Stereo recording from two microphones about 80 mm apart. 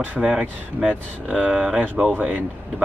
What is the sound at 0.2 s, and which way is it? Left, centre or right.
Speech, centre.